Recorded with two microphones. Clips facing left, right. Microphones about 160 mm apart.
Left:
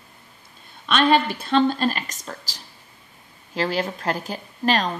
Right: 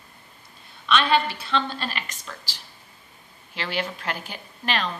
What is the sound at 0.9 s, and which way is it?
A woman's voice, 45° left (ahead or behind).